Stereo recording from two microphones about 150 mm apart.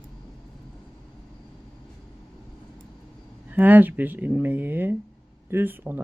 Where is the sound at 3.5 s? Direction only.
10° right (ahead or behind).